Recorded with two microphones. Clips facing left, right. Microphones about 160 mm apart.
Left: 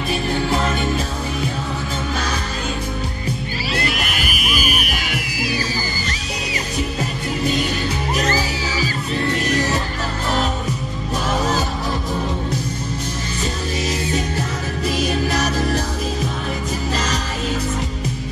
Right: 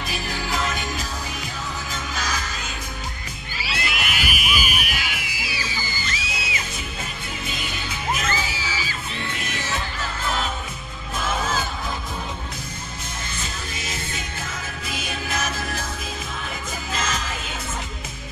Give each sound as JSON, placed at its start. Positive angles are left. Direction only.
{"t": 0.1, "sound": "music", "side_deg": 30}
{"t": 2.1, "sound": "music", "side_deg": 30}
{"t": 3.6, "sound": "music", "side_deg": 40}
{"t": 11.2, "sound": "music", "side_deg": 40}
{"t": 14.9, "sound": "music", "side_deg": 35}
{"t": 16.9, "sound": "music", "side_deg": 35}